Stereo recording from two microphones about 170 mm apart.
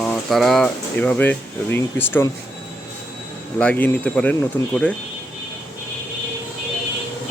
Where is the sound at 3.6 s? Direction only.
10° left (ahead or behind).